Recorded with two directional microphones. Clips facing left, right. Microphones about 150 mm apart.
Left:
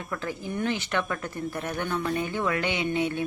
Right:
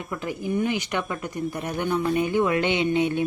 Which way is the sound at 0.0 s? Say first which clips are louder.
Right 3 dB; 15° right (ahead or behind).